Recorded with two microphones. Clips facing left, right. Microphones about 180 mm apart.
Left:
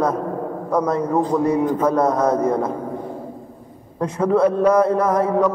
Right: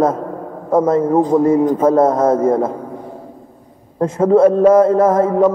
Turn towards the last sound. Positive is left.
turn(degrees=-25)  # may be behind; listen again after turning